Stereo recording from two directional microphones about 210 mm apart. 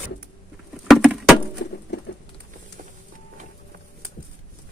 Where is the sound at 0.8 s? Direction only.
Centre (ahead or behind).